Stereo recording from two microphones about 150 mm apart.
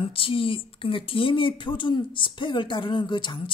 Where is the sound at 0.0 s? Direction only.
35° left (ahead or behind).